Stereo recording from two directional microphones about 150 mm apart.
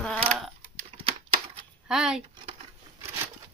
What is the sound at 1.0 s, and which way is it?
Typewriter, 35° right (ahead or behind).